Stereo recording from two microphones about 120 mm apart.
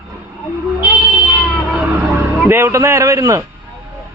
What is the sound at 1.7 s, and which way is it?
Vehicle, 15° right (ahead or behind).